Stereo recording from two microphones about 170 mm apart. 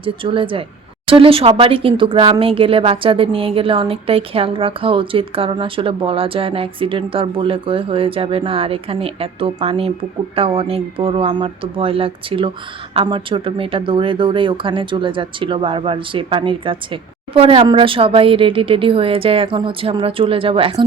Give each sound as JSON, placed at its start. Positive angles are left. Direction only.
{"t": 0.0, "sound": "speech", "side_deg": -30}